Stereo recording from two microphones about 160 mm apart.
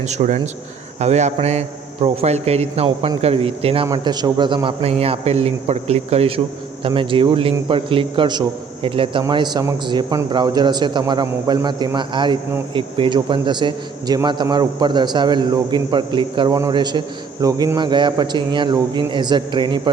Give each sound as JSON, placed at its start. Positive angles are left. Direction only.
{"t": 0.0, "sound": "a man's voice", "side_deg": -45}
{"t": 3.8, "sound": "a man's voice", "side_deg": -25}